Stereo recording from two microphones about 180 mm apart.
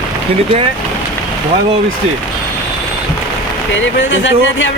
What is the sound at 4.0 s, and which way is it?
Speech, 90° left.